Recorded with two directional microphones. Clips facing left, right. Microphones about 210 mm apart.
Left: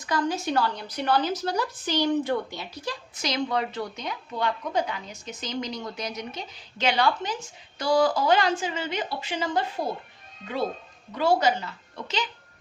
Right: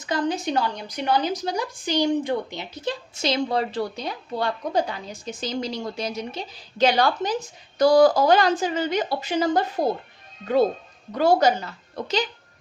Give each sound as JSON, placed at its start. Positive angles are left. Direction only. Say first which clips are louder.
{"t": 0.0, "sound": "a woman's voice", "louder": "right 2 dB", "side_deg": -20}
{"t": 11.1, "sound": "a woman's voice", "louder": "right 4 dB", "side_deg": -45}